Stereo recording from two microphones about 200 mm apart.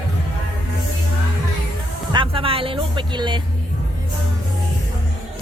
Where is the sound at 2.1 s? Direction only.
25° right (ahead or behind).